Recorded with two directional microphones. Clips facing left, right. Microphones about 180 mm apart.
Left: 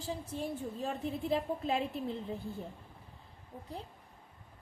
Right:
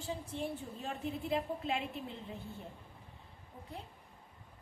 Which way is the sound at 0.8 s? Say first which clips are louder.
Left 3 dB; 35° left (ahead or behind).